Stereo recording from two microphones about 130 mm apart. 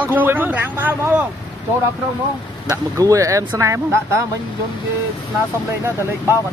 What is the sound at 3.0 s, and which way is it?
Speech, 25° right (ahead or behind).